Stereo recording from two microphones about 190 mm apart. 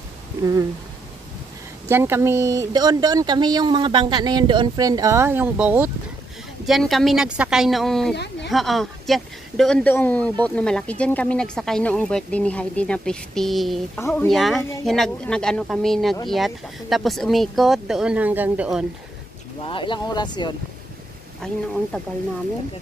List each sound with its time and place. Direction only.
0.4 s speech: 20° right (ahead or behind)
1.9 s speech: 10° right (ahead or behind)
8.1 s speech: 60° left (ahead or behind)
8.5 s speech: centre (ahead or behind)
19.6 s speech: 25° left (ahead or behind)
21.4 s speech: 5° left (ahead or behind)